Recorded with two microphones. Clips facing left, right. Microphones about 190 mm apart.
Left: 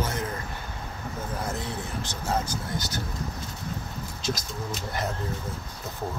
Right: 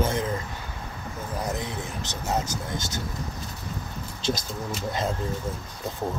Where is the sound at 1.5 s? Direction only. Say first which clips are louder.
Right 1 dB; 20° right (ahead or behind).